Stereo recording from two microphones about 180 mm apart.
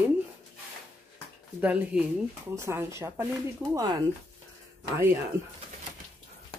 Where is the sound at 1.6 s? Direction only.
10° right (ahead or behind).